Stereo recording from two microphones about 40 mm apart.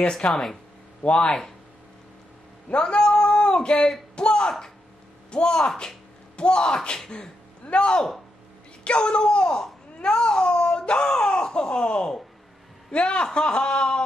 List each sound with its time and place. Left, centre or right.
0.3 s speech: centre
1.0 s speech: left
2.7 s a sound: left
4.1 s speech: left